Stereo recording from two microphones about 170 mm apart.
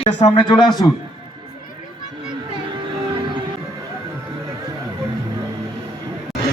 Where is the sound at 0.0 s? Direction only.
40° left (ahead or behind).